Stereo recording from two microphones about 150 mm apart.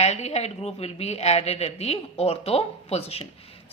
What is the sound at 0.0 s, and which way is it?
Speech, 45° left (ahead or behind).